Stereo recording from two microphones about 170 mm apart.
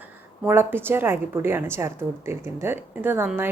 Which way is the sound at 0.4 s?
15° right (ahead or behind).